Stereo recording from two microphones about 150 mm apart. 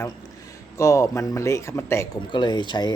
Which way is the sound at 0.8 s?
20° left (ahead or behind).